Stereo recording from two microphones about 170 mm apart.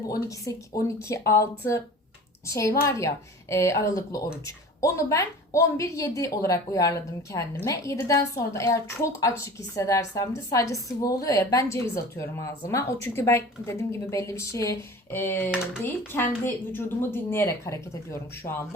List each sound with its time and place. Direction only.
0.3 s a woman's voice: 20° left (ahead or behind)